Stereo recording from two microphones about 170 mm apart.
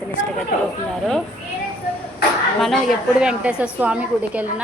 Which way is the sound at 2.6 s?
Centre (ahead or behind).